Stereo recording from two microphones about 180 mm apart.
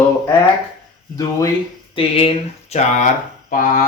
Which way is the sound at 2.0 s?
30° left (ahead or behind).